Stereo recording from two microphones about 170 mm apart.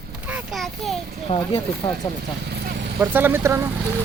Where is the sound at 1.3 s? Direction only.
35° left (ahead or behind).